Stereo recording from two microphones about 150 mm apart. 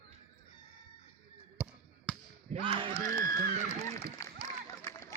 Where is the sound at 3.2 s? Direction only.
55° right (ahead or behind).